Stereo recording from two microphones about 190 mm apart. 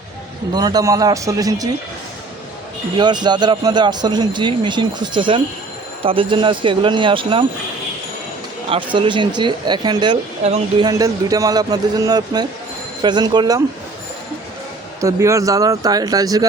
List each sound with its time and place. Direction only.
0.5 s speech: 20° right (ahead or behind)
3.0 s speech: 20° right (ahead or behind)
8.7 s speech: 25° right (ahead or behind)
10.4 s speech: 35° right (ahead or behind)
10.8 s speech: 20° right (ahead or behind)
15.0 s speech: 15° right (ahead or behind)